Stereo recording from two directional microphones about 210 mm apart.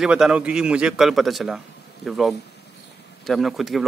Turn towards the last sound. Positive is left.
turn(degrees=0)  # may be behind; listen again after turning